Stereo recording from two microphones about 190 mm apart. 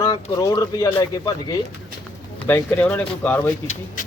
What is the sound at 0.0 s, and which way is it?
Speech, 20° left (ahead or behind).